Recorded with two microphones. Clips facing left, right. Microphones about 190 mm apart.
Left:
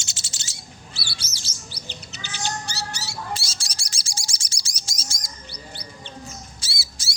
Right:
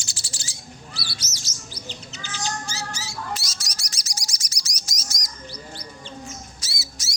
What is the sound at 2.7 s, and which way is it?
Rodents, 70° left (ahead or behind).